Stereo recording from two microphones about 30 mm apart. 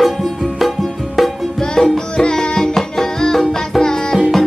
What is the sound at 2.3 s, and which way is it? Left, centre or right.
Music, left.